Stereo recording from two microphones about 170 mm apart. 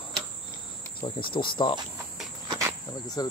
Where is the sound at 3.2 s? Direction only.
25° left (ahead or behind).